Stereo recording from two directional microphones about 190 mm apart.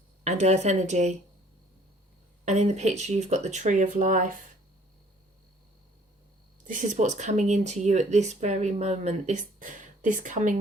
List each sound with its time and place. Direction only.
0.3 s speech: 35° right (ahead or behind)
2.4 s speech: 35° right (ahead or behind)
6.7 s speech: 40° right (ahead or behind)